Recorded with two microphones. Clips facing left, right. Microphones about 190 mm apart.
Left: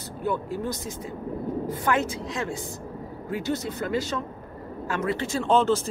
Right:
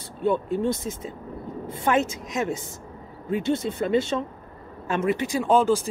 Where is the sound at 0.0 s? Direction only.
25° right (ahead or behind).